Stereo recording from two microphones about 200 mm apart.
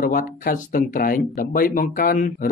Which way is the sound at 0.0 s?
45° left (ahead or behind).